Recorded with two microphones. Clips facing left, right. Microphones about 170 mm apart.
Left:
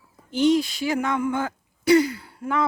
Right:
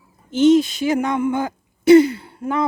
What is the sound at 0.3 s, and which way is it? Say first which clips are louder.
A woman's voice: right 6 dB; 20° right (ahead or behind).